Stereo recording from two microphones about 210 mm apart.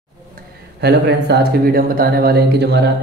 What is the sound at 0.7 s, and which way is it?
Speech, 55° right (ahead or behind).